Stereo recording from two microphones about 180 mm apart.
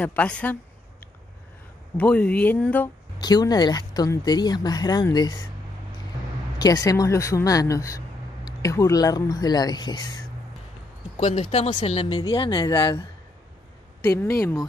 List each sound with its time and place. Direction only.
0.0 s a woman's voice: 10° left (ahead or behind)
2.0 s a woman's voice: 5° left (ahead or behind)
3.2 s speech: 20° left (ahead or behind)
6.6 s a woman's voice: 20° left (ahead or behind)
11.1 s speech: 35° left (ahead or behind)
14.0 s a woman's voice: 15° left (ahead or behind)